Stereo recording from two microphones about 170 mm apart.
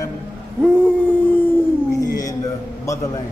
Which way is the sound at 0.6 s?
5° left (ahead or behind).